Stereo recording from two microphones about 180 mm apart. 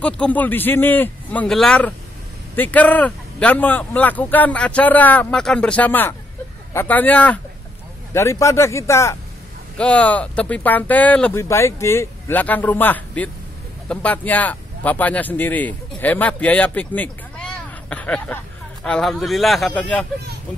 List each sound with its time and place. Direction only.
0.0 s a man's voice: 10° left (ahead or behind)